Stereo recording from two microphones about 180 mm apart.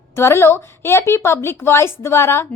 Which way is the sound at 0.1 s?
15° left (ahead or behind).